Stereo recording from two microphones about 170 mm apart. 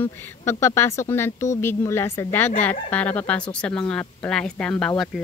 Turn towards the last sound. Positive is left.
turn(degrees=5)  # may be behind; listen again after turning